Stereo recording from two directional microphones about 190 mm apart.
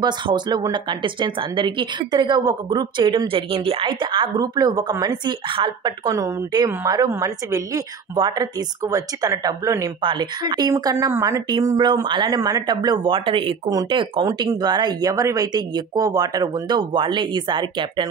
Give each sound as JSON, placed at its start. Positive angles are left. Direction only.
{"t": 0.0, "sound": "speech", "side_deg": -20}